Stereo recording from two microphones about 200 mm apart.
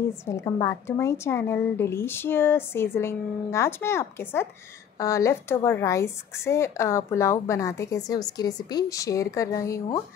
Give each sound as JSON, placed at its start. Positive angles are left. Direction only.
{"t": 0.3, "sound": "speech", "side_deg": 15}